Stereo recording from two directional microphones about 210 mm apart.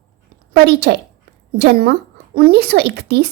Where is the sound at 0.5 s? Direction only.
50° right (ahead or behind).